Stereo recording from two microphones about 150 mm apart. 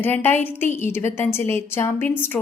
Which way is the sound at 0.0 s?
15° left (ahead or behind).